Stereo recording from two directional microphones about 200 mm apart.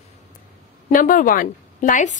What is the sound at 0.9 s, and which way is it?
Speech, 40° left (ahead or behind).